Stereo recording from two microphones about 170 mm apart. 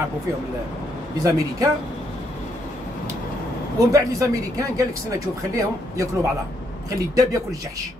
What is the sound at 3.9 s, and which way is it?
Speech, 20° right (ahead or behind).